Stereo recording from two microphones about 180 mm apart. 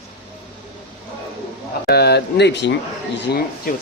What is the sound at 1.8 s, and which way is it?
Speech, 65° left (ahead or behind).